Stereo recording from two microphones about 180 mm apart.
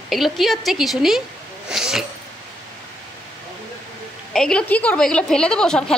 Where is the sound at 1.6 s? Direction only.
Centre (ahead or behind).